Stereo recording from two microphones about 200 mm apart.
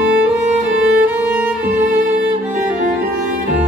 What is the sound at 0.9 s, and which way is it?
Music, 10° right (ahead or behind).